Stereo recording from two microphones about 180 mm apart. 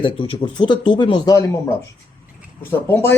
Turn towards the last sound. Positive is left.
turn(degrees=10)  # may be behind; listen again after turning